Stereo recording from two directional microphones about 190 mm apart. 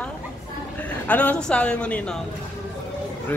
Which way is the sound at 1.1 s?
10° left (ahead or behind).